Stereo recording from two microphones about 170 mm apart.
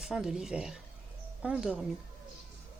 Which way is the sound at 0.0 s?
Centre (ahead or behind).